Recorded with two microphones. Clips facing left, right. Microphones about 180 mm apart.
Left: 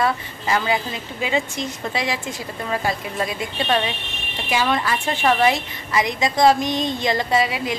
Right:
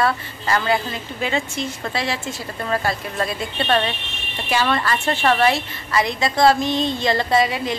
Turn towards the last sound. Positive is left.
turn(degrees=10)  # may be behind; listen again after turning